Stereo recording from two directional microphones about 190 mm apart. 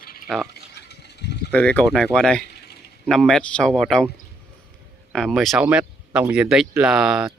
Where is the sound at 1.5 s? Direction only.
5° left (ahead or behind).